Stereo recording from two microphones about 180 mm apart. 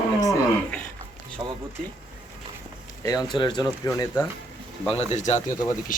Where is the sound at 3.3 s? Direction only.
25° left (ahead or behind).